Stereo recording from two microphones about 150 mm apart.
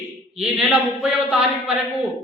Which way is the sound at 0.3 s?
5° right (ahead or behind).